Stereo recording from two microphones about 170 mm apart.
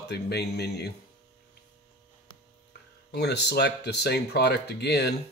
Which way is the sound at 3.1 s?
75° left (ahead or behind).